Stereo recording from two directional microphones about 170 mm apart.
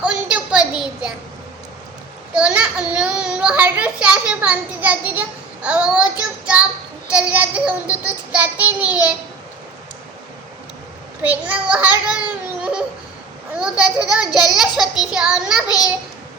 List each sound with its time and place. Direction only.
0.0 s a sound: 5° right (ahead or behind)
2.3 s a child's voice: 5° right (ahead or behind)
11.2 s a child's voice: 10° right (ahead or behind)
13.6 s a child's voice: 5° right (ahead or behind)
15.6 s a child's voice: 20° left (ahead or behind)